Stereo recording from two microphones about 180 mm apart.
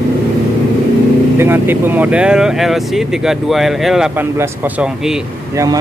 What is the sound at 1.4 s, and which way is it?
Speech, 10° right (ahead or behind).